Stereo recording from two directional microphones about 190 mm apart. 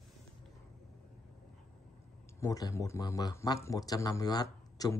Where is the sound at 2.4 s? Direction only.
20° left (ahead or behind).